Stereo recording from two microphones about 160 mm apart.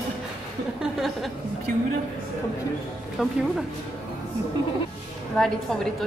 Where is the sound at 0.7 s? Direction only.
Centre (ahead or behind).